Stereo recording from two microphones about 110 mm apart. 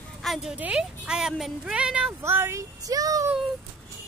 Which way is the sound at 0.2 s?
Centre (ahead or behind).